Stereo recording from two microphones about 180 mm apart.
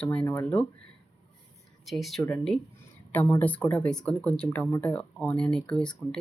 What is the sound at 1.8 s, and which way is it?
Speech, centre (ahead or behind).